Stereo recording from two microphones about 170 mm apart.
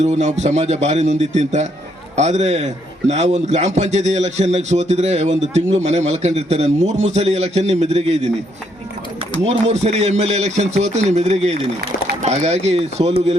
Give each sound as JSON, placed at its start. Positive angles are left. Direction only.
{"t": 0.0, "sound": "a man's voice", "side_deg": -40}
{"t": 9.5, "sound": "a man's voice", "side_deg": -40}